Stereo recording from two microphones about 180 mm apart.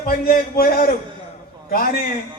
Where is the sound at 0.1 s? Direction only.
55° left (ahead or behind).